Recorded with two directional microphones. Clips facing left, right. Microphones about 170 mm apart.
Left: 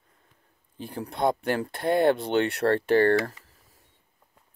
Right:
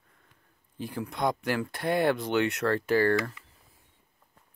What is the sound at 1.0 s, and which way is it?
Speech, 30° left (ahead or behind).